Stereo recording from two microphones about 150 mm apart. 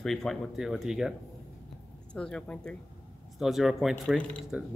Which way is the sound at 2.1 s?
5° left (ahead or behind).